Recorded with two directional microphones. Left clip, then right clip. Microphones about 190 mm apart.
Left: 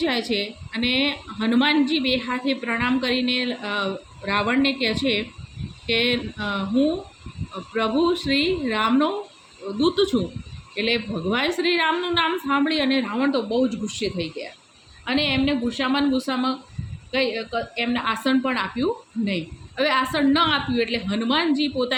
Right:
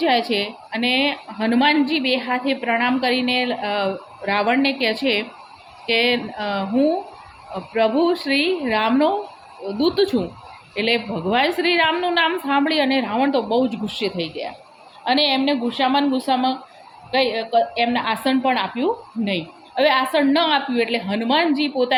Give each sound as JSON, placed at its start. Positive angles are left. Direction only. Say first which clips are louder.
{"t": 0.0, "sound": "a woman's voice", "louder": "right 5 dB", "side_deg": 15}